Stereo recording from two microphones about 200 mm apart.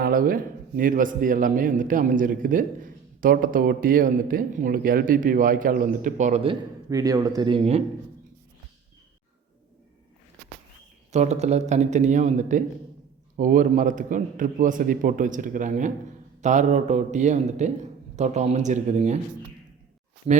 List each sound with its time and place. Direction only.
0.0 s a man's voice: 45° right (ahead or behind); by 7.8 s 25° right (ahead or behind)
11.1 s a man's voice: 35° right (ahead or behind)